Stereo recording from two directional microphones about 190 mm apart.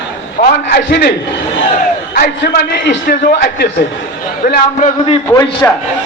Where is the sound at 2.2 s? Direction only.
55° left (ahead or behind).